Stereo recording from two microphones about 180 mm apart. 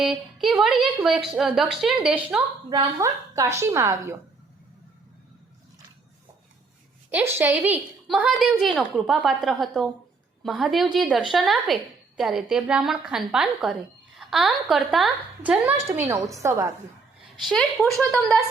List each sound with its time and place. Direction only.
0.0 s a woman's voice: centre (ahead or behind)
2.6 s a woman's voice: 20° right (ahead or behind)
7.1 s a woman's voice: 10° right (ahead or behind)
17.4 s a woman's voice: centre (ahead or behind)